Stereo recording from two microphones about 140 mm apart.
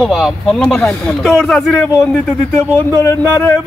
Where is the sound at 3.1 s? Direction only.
20° left (ahead or behind).